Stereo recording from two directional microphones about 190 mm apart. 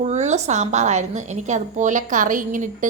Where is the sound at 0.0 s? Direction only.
35° right (ahead or behind).